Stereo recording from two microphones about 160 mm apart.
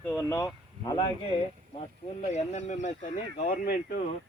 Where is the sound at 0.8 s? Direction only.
25° left (ahead or behind).